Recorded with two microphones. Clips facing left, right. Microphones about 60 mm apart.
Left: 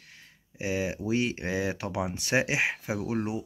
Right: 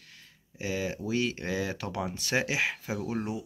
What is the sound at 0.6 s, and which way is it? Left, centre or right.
Speech, left.